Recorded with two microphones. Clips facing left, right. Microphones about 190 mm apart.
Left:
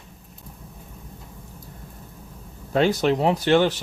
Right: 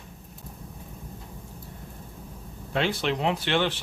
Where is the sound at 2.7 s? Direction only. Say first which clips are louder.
Left 7 dB; 40° left (ahead or behind).